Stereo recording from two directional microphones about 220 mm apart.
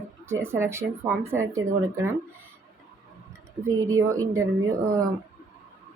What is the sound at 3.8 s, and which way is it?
Speech, 15° right (ahead or behind).